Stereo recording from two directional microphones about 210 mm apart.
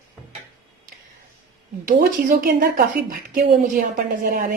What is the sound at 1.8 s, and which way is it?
A woman's voice, 40° right (ahead or behind).